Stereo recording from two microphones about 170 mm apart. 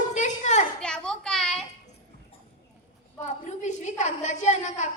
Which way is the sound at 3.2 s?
45° left (ahead or behind).